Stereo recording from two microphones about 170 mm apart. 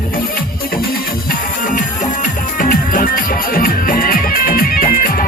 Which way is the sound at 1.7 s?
50° left (ahead or behind).